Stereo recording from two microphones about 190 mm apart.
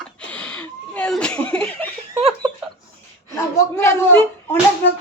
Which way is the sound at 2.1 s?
25° right (ahead or behind).